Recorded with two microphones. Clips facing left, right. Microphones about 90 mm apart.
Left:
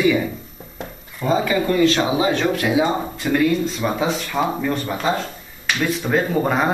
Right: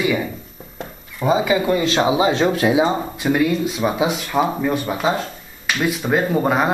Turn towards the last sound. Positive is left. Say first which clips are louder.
# right 1 dB
turn(degrees=-5)  # may be behind; listen again after turning